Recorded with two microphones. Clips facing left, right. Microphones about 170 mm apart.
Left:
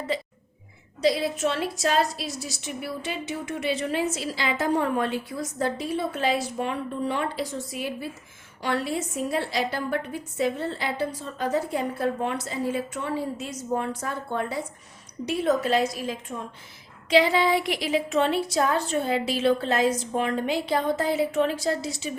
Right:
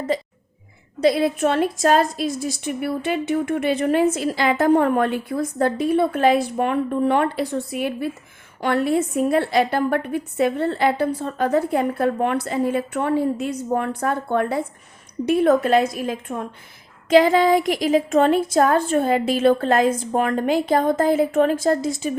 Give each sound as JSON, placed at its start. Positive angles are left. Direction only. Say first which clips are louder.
{"t": 1.0, "sound": "a woman's voice", "louder": "right 6 dB", "side_deg": -55}